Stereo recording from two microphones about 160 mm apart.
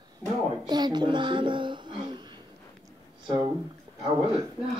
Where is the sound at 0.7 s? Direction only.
25° right (ahead or behind).